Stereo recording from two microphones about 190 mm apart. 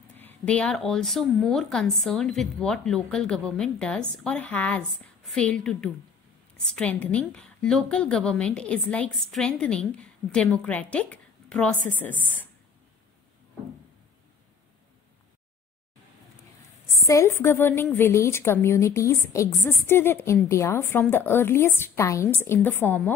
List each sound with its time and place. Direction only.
0.2 s a woman's voice: 10° left (ahead or behind)
17.0 s a woman's voice: 15° left (ahead or behind)